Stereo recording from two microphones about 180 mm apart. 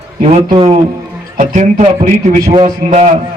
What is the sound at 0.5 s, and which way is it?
A man's voice, 35° right (ahead or behind).